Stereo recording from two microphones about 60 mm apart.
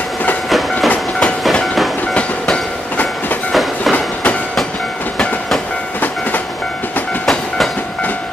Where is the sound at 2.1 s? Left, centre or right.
Centre.